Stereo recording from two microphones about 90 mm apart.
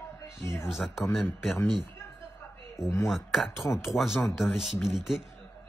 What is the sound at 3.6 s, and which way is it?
Speech, 35° left (ahead or behind).